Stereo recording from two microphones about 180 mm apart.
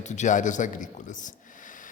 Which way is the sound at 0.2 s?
45° left (ahead or behind).